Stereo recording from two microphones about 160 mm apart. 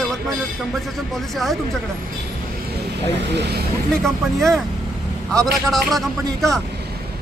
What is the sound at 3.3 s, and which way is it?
Speech, 90° right.